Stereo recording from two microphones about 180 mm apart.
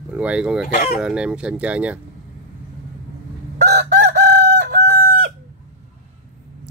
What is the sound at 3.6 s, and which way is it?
Chicken, 70° right (ahead or behind).